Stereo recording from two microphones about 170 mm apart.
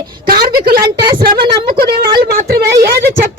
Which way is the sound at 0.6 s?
60° right (ahead or behind).